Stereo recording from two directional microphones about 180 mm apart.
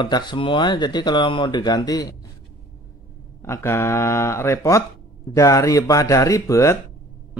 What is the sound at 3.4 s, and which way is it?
Speech, 15° left (ahead or behind).